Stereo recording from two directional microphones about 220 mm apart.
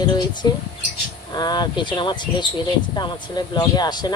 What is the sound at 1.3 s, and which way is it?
Speech, 20° left (ahead or behind).